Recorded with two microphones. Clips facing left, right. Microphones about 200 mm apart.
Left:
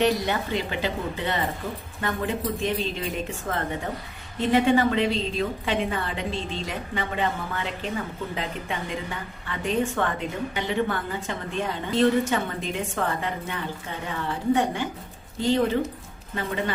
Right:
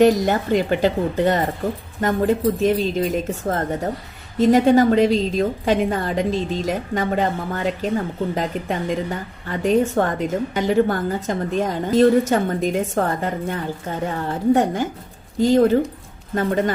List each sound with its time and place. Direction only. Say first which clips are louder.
0.0 s a woman's voice: right 8 dB; 45° right (ahead or behind)